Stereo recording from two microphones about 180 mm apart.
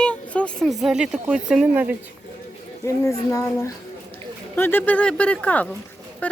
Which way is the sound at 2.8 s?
15° left (ahead or behind).